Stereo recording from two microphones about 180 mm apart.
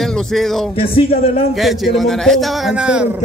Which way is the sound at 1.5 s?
Centre (ahead or behind).